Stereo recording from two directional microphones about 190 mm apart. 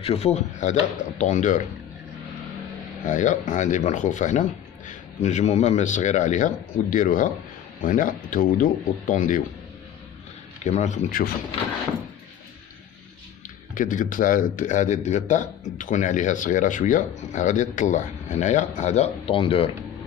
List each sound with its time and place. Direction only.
0.0 s a man's voice: 30° left (ahead or behind)
3.1 s a man's voice: 40° left (ahead or behind)
10.6 s a man's voice: 40° left (ahead or behind)
13.7 s a man's voice: 45° left (ahead or behind)